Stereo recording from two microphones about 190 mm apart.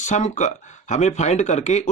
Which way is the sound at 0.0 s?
40° left (ahead or behind).